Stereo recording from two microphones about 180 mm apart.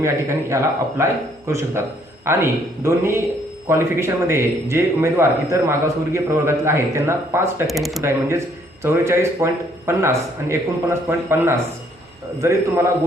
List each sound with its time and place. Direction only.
0.0 s a man's voice: 15° right (ahead or behind)
7.7 s speech: centre (ahead or behind)
8.8 s a man's voice: 15° right (ahead or behind)